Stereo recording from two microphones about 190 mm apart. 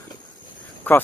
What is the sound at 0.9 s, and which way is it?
Speech, 10° left (ahead or behind).